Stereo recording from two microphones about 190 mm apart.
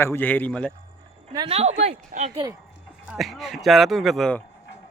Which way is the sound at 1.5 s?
35° right (ahead or behind).